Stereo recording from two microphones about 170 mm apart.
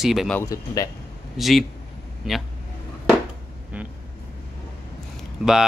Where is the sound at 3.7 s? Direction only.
10° right (ahead or behind).